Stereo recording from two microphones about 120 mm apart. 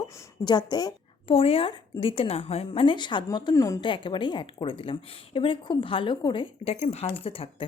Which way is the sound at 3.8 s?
45° left (ahead or behind).